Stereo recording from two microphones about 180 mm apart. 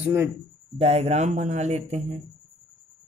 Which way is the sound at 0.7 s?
35° right (ahead or behind).